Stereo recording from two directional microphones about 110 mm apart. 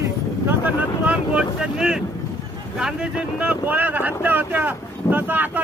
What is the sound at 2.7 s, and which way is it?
Speech, 5° right (ahead or behind).